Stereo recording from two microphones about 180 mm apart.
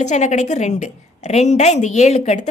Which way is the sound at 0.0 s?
40° left (ahead or behind).